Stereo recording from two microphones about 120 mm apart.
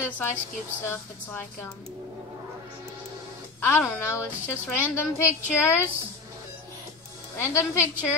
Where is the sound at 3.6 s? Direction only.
20° left (ahead or behind).